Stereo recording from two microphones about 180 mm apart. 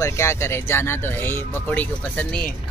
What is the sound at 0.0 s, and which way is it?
Speech, 15° left (ahead or behind).